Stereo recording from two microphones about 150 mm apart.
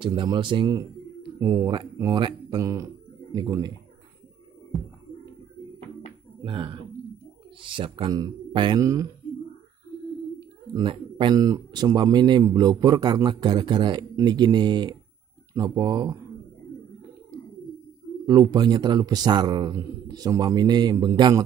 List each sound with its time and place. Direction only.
0.0 s speech: 35° right (ahead or behind)
6.4 s speech: 35° right (ahead or behind)
10.7 s speech: 35° right (ahead or behind)
18.2 s speech: 25° right (ahead or behind)